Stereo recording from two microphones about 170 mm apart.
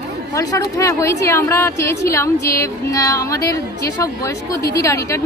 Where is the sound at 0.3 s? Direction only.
20° left (ahead or behind).